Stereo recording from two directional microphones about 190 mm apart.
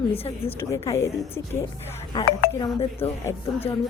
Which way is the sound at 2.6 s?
30° left (ahead or behind).